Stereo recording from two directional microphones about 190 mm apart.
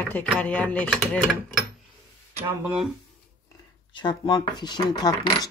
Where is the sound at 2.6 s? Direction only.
5° right (ahead or behind).